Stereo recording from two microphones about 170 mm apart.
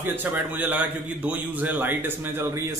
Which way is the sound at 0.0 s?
10° right (ahead or behind).